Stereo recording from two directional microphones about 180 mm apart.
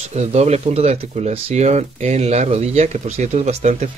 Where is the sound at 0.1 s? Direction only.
35° right (ahead or behind).